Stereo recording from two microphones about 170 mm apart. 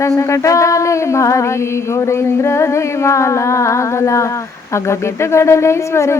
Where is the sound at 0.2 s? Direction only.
15° left (ahead or behind).